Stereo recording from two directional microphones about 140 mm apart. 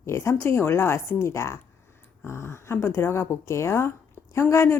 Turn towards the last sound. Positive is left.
turn(degrees=20)  # may be behind; listen again after turning